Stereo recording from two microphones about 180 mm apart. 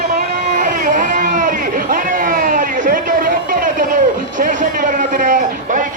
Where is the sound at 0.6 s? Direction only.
50° right (ahead or behind).